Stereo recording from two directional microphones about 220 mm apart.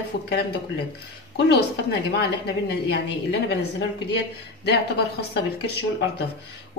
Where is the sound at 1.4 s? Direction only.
50° left (ahead or behind).